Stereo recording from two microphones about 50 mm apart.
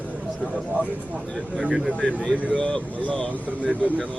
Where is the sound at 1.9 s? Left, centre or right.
Left.